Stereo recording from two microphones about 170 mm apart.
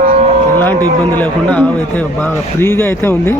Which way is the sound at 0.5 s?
10° left (ahead or behind).